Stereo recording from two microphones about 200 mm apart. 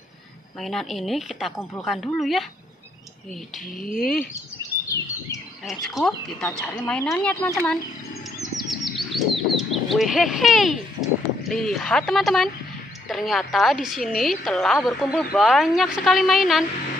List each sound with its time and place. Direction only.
0.6 s a woman's voice: centre (ahead or behind)
3.8 s speech: 45° left (ahead or behind)
5.7 s a woman's voice: centre (ahead or behind)
8.6 s a woman's voice: centre (ahead or behind)